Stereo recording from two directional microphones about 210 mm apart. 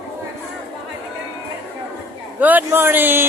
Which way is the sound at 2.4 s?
10° right (ahead or behind).